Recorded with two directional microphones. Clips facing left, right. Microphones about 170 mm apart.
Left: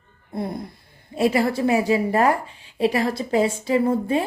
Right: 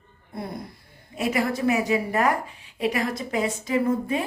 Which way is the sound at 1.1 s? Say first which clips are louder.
Left 5 dB; 30° left (ahead or behind).